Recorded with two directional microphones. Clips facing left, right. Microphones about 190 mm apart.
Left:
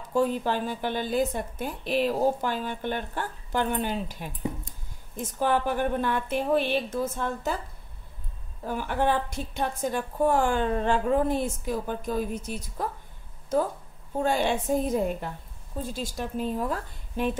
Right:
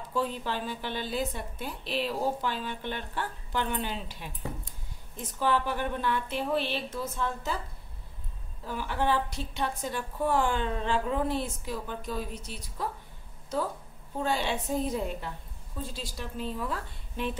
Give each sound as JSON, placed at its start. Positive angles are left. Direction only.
{"t": 0.1, "sound": "a woman's voice", "side_deg": 45}
{"t": 8.6, "sound": "a woman's voice", "side_deg": 50}
{"t": 14.2, "sound": "a woman's voice", "side_deg": 50}